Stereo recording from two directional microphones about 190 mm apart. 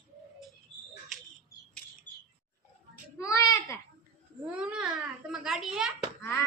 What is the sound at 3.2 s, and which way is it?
Baby cry, 15° left (ahead or behind).